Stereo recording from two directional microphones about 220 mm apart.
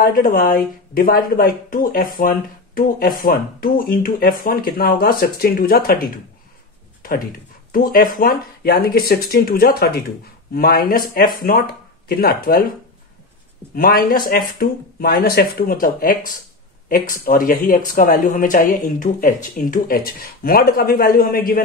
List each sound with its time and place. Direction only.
0.0 s speech: 40° left (ahead or behind)
7.7 s speech: 40° left (ahead or behind)
13.7 s speech: 40° left (ahead or behind)